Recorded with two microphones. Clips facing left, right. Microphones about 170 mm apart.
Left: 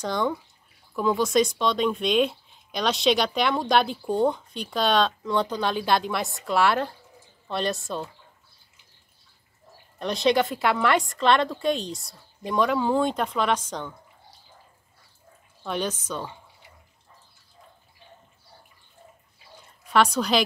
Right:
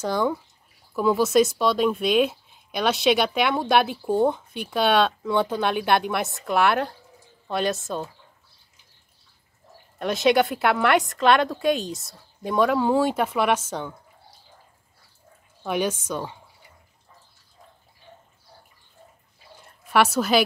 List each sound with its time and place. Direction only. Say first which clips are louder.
0.0 s speech: right 2 dB; 5° right (ahead or behind)
7.4 s speech: right 2 dB; 5° right (ahead or behind)
9.9 s speech: right 2 dB; 5° right (ahead or behind)
15.6 s a woman's voice: right 4 dB; 10° right (ahead or behind)
19.9 s speech: right 2 dB; 5° right (ahead or behind)